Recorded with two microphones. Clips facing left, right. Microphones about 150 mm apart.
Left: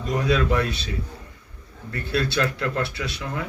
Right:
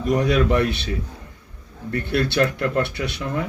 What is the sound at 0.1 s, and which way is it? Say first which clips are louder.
Speech: right 3 dB; 65° right (ahead or behind).